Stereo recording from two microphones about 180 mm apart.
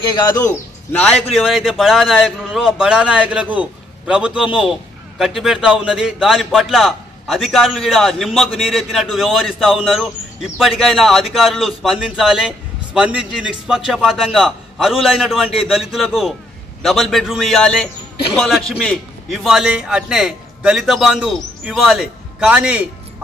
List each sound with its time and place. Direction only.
0.1 s speech: 20° left (ahead or behind)
0.9 s a man's voice: centre (ahead or behind)